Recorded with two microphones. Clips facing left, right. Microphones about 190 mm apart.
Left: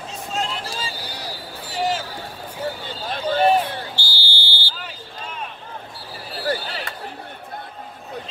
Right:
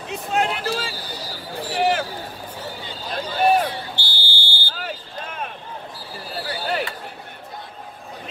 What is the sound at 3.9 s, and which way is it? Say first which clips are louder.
Buzzer: even; 55° right (ahead or behind).